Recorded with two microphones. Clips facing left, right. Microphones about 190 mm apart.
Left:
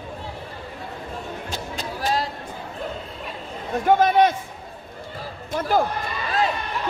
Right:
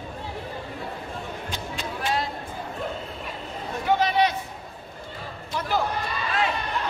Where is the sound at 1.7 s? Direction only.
40° left (ahead or behind).